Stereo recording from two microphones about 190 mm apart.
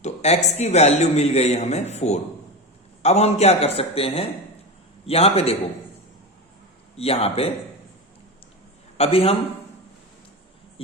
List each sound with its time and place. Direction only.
0.0 s a man's voice: 35° left (ahead or behind)
6.9 s a man's voice: 30° left (ahead or behind)
9.0 s a man's voice: 30° left (ahead or behind)
10.8 s speech: 30° left (ahead or behind)